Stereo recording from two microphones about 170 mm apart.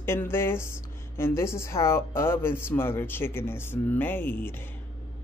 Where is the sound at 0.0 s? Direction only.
15° left (ahead or behind).